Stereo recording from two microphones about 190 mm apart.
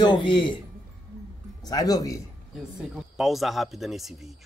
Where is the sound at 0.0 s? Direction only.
25° left (ahead or behind).